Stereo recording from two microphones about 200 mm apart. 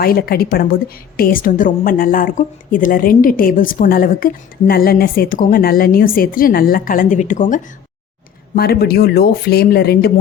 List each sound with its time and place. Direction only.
0.0 s a woman's voice: 50° left (ahead or behind)
8.5 s a woman's voice: 50° left (ahead or behind)